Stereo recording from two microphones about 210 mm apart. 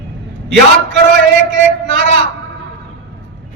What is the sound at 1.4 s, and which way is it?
Speech, 60° right (ahead or behind).